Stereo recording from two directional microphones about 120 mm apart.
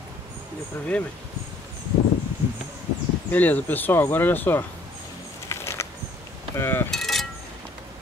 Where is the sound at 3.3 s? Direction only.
15° left (ahead or behind).